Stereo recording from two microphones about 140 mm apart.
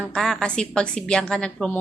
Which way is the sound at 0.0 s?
5° left (ahead or behind).